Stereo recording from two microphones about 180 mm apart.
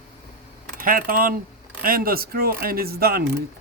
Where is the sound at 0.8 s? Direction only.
50° right (ahead or behind).